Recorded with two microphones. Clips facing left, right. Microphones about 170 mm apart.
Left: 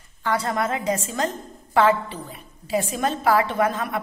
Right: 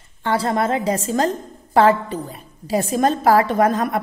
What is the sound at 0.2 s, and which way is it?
A woman's voice, 30° right (ahead or behind).